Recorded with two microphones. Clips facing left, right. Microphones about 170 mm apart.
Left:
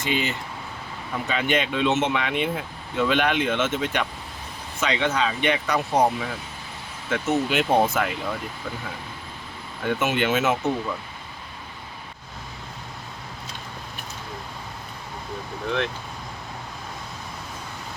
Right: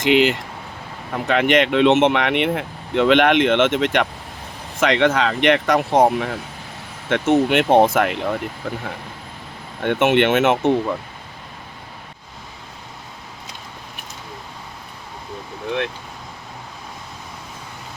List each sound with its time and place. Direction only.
0.1 s speech: 75° right (ahead or behind)
9.8 s speech: 65° right (ahead or behind)